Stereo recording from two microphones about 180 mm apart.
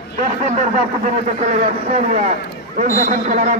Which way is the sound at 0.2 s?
40° right (ahead or behind).